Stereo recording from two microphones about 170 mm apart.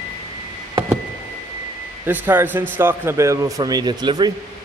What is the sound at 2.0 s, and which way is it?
Speech, 10° right (ahead or behind).